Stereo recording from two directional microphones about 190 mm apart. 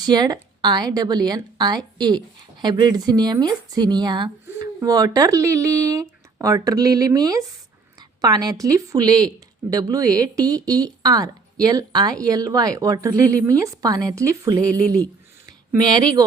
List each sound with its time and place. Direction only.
0.0 s a woman's voice: 20° right (ahead or behind)